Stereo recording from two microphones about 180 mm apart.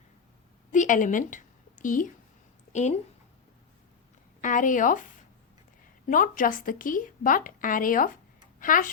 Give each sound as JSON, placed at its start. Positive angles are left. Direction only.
{"t": 0.7, "sound": "a sound", "side_deg": 45}
{"t": 2.7, "sound": "speech", "side_deg": 40}
{"t": 4.4, "sound": "a woman's voice", "side_deg": 45}
{"t": 6.1, "sound": "a woman's voice", "side_deg": 45}